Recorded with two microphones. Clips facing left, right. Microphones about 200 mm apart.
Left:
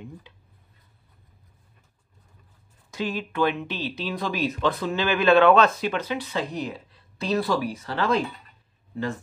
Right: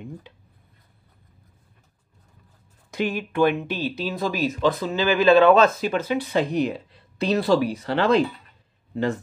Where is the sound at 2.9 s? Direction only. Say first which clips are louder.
Right 4 dB; 60° right (ahead or behind).